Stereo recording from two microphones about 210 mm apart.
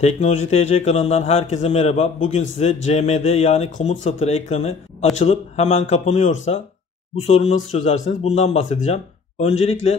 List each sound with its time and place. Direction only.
0.0 s a man's voice: 35° left (ahead or behind)